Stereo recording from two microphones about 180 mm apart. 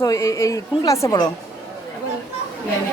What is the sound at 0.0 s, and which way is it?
A woman's voice, 15° left (ahead or behind).